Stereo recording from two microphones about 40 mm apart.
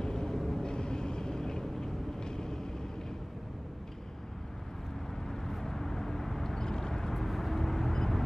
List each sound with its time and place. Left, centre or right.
0.0 s vehicle: centre
0.7 s vehicle: centre
5.3 s vehicle: centre